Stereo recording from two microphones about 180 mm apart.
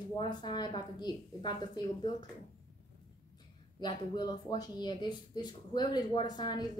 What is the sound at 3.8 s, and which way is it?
Speech, 25° left (ahead or behind).